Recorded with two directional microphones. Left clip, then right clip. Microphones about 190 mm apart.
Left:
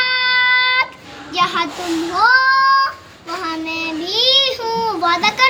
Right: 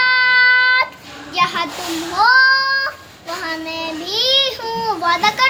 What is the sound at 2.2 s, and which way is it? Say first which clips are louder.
Child singing: right 1 dB; 20° right (ahead or behind).